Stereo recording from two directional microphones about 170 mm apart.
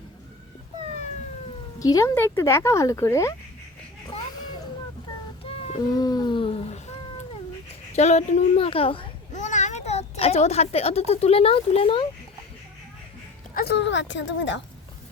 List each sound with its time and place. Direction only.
1.8 s speech: 20° left (ahead or behind)
5.5 s a sound: 40° left (ahead or behind)
6.0 s speech: 25° left (ahead or behind); by 6.9 s 40° left (ahead or behind)
7.9 s a child's voice: 40° left (ahead or behind)
13.5 s speech: 65° left (ahead or behind); by 14.6 s 90° left